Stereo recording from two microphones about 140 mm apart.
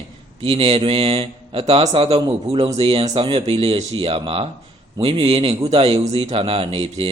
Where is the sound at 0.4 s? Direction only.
40° right (ahead or behind).